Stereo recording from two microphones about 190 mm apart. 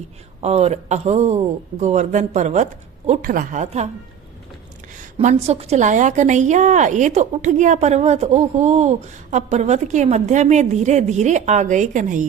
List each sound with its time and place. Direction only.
0.4 s a woman's voice: 35° right (ahead or behind)
5.1 s a woman's voice: 35° right (ahead or behind)